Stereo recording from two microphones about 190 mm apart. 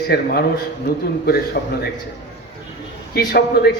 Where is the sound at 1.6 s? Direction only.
60° left (ahead or behind).